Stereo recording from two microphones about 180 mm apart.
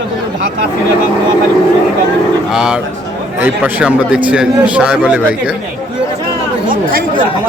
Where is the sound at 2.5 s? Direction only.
5° right (ahead or behind).